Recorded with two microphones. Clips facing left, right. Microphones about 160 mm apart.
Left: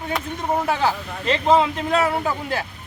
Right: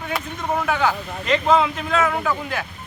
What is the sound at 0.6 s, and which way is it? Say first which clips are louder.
Speech: even; 35° left (ahead or behind).